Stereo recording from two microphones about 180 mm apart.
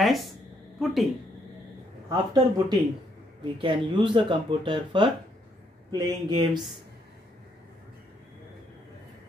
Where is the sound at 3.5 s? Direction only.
25° right (ahead or behind).